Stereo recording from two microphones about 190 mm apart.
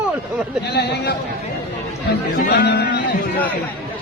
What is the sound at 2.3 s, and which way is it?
Speech, 60° left (ahead or behind).